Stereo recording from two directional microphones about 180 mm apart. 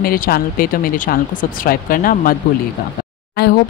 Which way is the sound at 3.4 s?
60° left (ahead or behind).